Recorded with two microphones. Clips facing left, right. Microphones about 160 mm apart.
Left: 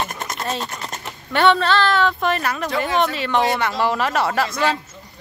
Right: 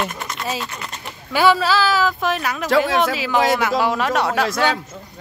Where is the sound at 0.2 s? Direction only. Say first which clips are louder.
Left 1 dB; 45° left (ahead or behind).